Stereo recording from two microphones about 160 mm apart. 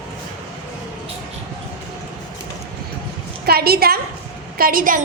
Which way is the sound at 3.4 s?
75° right (ahead or behind).